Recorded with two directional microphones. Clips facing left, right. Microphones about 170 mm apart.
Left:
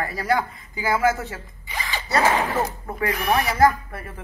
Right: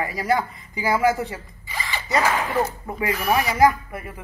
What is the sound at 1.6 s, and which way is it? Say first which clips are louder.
Zipper: left 1 dB; 15° left (ahead or behind).